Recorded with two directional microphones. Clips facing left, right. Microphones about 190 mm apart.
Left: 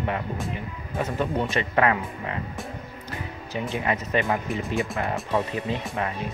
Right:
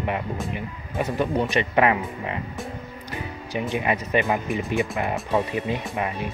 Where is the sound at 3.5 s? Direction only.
15° right (ahead or behind).